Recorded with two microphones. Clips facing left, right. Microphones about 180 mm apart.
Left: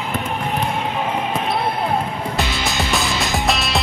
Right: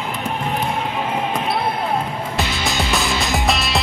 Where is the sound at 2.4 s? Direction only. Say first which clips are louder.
Right 1 dB; centre (ahead or behind).